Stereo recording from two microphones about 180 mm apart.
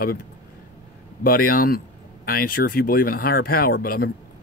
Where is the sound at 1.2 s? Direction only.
55° left (ahead or behind).